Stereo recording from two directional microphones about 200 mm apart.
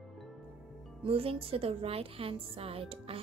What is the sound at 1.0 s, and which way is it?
A woman's voice, 30° right (ahead or behind).